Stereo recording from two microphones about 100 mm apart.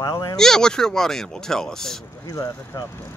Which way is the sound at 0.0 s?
35° left (ahead or behind).